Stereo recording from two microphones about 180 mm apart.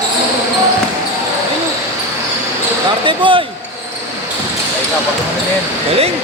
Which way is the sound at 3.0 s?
25° right (ahead or behind).